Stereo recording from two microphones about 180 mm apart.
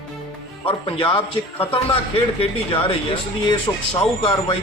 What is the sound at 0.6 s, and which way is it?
A man's voice, 30° left (ahead or behind).